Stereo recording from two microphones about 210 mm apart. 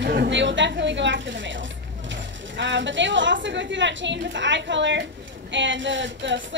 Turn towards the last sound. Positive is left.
turn(degrees=-60)  # may be behind; listen again after turning